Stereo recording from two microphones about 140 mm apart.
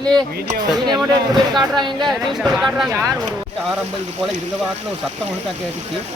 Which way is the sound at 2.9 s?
25° right (ahead or behind).